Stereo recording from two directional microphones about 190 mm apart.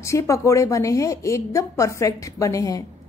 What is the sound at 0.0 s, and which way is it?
A woman's voice, 15° left (ahead or behind).